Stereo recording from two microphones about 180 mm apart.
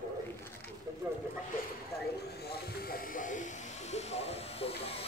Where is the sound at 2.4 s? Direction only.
60° left (ahead or behind); by 5.1 s 35° left (ahead or behind).